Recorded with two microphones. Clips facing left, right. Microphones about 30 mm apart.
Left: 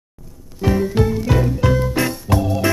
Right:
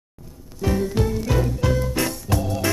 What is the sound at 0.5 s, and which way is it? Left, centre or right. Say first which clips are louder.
Music: left 5 dB; centre.